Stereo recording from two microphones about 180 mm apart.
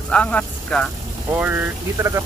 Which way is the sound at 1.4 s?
10° right (ahead or behind).